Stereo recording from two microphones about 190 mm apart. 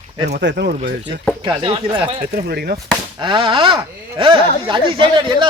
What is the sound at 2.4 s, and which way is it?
Speech, 55° right (ahead or behind).